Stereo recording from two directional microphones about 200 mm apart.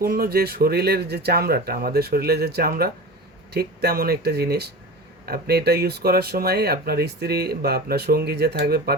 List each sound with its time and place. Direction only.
0.0 s speech: 50° right (ahead or behind)